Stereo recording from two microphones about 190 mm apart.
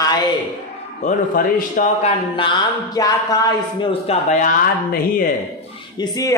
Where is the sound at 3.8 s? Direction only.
30° left (ahead or behind).